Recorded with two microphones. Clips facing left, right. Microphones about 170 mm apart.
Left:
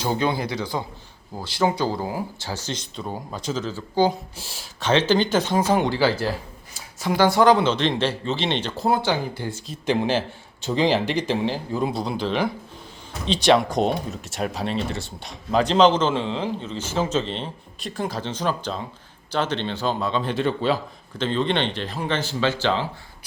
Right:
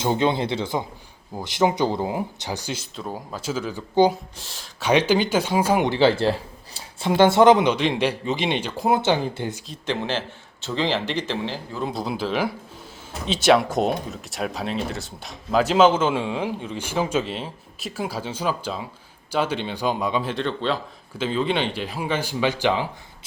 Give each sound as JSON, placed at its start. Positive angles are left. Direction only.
{"t": 0.0, "sound": "speech", "side_deg": -20}
{"t": 4.4, "sound": "a man's voice", "side_deg": 10}
{"t": 4.8, "sound": "speech", "side_deg": -10}
{"t": 9.6, "sound": "a man's voice", "side_deg": 10}
{"t": 11.9, "sound": "speech", "side_deg": -5}
{"t": 20.3, "sound": "a man's voice", "side_deg": 5}
{"t": 21.2, "sound": "speech", "side_deg": -5}